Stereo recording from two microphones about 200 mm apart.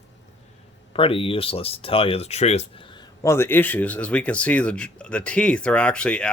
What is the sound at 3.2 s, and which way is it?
Speech, 15° left (ahead or behind).